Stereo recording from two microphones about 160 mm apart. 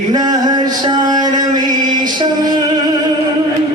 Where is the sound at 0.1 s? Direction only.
25° right (ahead or behind).